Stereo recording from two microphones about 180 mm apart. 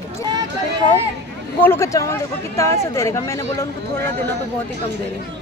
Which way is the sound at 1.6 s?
15° left (ahead or behind).